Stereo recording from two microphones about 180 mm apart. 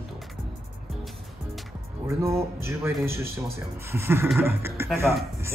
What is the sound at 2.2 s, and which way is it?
Music, 15° right (ahead or behind).